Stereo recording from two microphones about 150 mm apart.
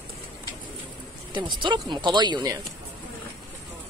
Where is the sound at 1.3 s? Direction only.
30° right (ahead or behind).